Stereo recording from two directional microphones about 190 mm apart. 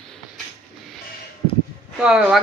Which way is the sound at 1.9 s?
5° right (ahead or behind).